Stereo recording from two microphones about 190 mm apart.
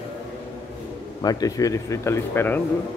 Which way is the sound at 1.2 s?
20° left (ahead or behind).